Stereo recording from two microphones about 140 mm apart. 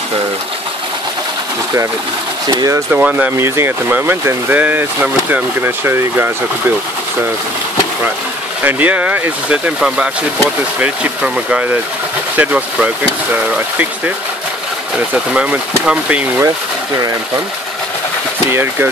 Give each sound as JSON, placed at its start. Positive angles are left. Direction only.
{"t": 2.4, "sound": "speech", "side_deg": -25}
{"t": 2.9, "sound": "speech", "side_deg": -10}
{"t": 8.6, "sound": "speech", "side_deg": -10}
{"t": 15.3, "sound": "speech", "side_deg": -10}
{"t": 18.5, "sound": "speech", "side_deg": -15}